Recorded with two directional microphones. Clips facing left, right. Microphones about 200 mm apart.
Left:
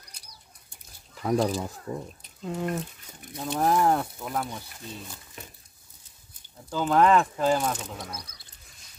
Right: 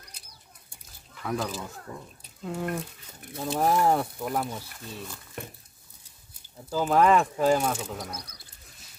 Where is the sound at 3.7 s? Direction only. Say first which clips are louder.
Even; 10° right (ahead or behind).